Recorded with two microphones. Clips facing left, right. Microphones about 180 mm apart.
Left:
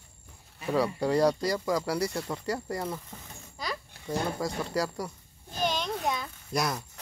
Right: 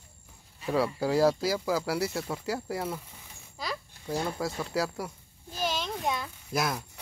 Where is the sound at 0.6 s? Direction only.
Centre (ahead or behind).